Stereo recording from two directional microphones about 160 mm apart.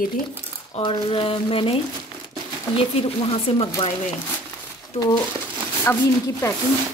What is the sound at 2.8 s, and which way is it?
Speech, 35° left (ahead or behind).